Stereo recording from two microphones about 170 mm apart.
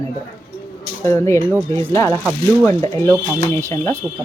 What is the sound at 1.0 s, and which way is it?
Speech, 15° left (ahead or behind).